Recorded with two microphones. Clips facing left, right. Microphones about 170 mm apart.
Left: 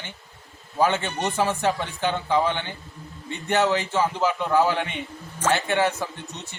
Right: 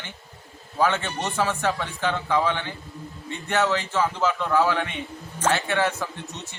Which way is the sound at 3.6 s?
15° left (ahead or behind).